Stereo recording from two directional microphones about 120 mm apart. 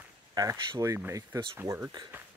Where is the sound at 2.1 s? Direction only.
15° right (ahead or behind).